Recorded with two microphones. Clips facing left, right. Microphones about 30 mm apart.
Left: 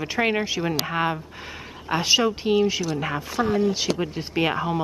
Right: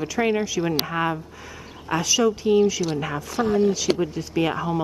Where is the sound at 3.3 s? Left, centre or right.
Left.